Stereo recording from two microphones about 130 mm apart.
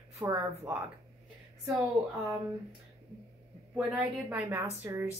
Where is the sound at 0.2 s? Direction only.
25° right (ahead or behind).